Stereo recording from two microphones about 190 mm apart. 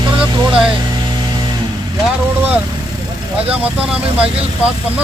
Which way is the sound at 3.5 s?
5° right (ahead or behind).